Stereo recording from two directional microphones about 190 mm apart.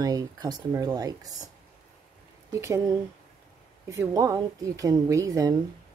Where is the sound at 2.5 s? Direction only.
15° right (ahead or behind).